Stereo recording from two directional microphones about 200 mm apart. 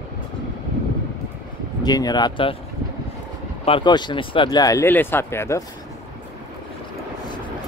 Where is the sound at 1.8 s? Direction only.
20° left (ahead or behind).